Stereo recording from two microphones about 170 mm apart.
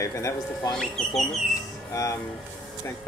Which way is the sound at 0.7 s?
Centre (ahead or behind).